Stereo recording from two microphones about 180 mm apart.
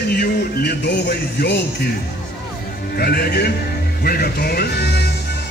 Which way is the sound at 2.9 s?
60° left (ahead or behind).